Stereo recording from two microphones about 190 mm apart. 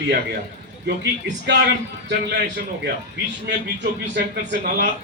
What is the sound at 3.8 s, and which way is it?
Speech, 65° right (ahead or behind).